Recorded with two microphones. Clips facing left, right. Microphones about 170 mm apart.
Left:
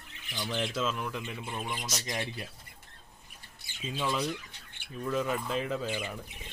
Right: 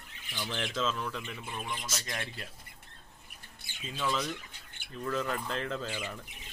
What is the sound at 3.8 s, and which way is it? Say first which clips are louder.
Speech: left 2 dB; 15° left (ahead or behind).